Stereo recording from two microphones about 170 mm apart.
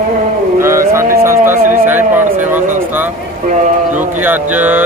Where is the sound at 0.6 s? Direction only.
15° right (ahead or behind).